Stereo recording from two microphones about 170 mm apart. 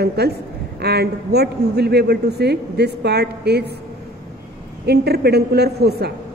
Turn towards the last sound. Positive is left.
turn(degrees=-70)  # may be behind; listen again after turning